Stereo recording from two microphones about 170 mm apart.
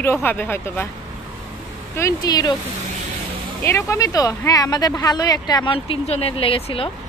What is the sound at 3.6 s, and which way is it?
Speech, 15° left (ahead or behind).